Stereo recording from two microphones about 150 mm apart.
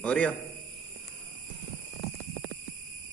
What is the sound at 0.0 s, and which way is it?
Speech, 10° left (ahead or behind).